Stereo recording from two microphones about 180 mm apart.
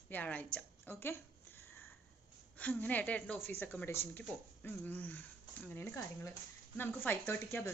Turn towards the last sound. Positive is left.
turn(degrees=10)  # may be behind; listen again after turning